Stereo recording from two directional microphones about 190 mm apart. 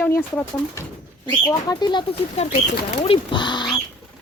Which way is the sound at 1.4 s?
20° left (ahead or behind).